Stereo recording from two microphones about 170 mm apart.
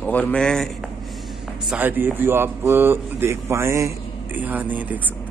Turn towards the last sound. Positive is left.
turn(degrees=-10)  # may be behind; listen again after turning